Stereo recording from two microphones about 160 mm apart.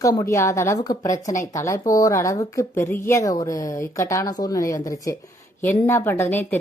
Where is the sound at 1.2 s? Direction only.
50° left (ahead or behind).